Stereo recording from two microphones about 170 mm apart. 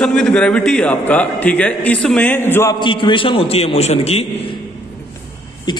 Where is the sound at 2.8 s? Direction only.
30° left (ahead or behind).